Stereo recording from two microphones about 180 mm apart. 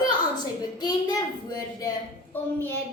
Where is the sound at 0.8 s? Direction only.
20° left (ahead or behind).